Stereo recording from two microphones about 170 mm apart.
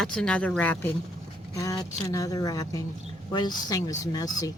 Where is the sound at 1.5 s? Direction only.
20° left (ahead or behind).